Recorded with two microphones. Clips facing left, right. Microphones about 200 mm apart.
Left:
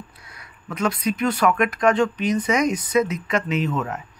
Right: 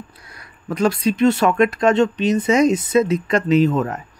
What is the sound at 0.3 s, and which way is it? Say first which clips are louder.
Speech: right 8 dB; 35° right (ahead or behind).